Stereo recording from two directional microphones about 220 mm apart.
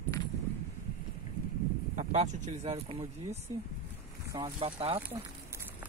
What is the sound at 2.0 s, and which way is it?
Speech, 30° right (ahead or behind).